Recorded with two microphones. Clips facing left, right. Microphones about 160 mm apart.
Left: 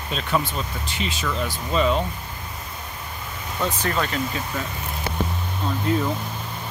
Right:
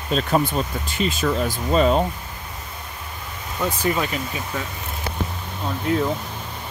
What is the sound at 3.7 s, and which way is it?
Speech, 10° right (ahead or behind).